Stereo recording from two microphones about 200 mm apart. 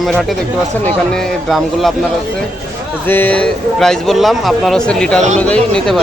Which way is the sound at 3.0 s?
10° left (ahead or behind).